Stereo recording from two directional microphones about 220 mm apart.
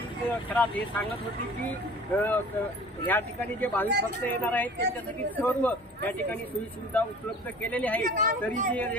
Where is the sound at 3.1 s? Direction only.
10° left (ahead or behind).